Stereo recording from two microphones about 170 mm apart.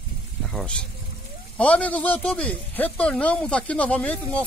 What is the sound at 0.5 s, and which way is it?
Speech, 5° left (ahead or behind).